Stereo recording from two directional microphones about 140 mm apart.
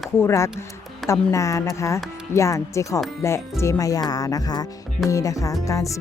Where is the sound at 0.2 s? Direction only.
20° left (ahead or behind).